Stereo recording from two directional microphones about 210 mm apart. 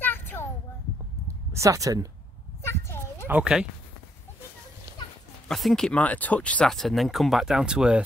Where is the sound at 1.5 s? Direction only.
15° right (ahead or behind).